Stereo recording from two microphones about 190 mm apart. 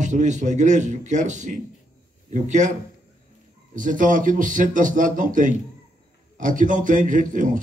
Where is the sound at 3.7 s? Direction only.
45° right (ahead or behind).